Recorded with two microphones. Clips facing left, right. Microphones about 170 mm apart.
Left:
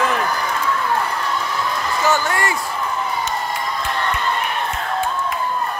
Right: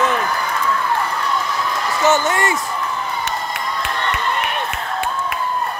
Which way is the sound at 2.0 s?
20° right (ahead or behind).